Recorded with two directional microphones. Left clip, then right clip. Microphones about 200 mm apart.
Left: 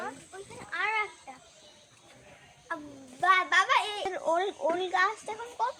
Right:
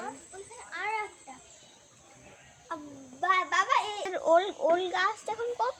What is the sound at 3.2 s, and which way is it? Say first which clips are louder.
Speech: left 3 dB; 15° left (ahead or behind).